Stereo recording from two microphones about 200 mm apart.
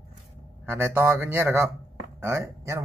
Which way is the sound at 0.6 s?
10° right (ahead or behind).